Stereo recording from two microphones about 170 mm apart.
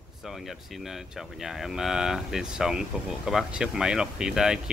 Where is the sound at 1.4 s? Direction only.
Centre (ahead or behind).